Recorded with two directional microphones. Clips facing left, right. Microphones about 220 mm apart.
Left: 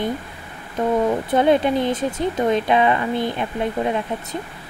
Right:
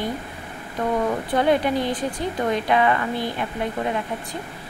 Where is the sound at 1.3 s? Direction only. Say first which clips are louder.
Left 2 dB; 20° left (ahead or behind).